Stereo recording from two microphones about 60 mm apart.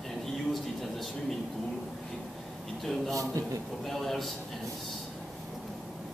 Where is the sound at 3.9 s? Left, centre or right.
Centre.